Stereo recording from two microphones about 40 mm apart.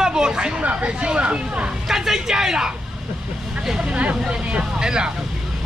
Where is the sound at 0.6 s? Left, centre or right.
Right.